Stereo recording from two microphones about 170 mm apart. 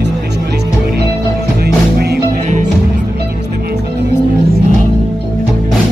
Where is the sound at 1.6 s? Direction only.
70° right (ahead or behind).